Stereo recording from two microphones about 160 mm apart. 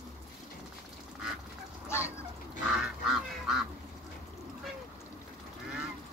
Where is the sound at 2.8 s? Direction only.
5° right (ahead or behind).